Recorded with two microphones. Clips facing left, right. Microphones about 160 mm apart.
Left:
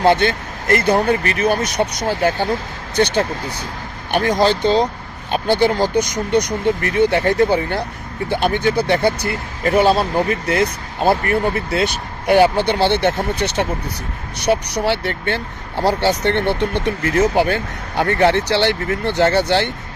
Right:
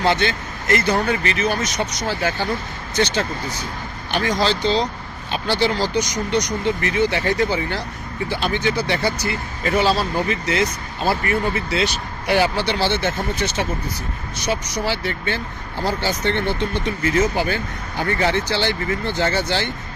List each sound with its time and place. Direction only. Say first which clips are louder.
0.0 s speech: left 5 dB; 50° left (ahead or behind)